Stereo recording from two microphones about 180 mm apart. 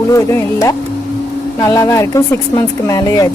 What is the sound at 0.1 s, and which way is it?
Speech, 15° left (ahead or behind).